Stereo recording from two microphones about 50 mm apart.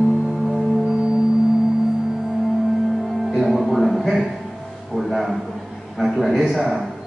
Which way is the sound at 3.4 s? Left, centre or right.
Centre.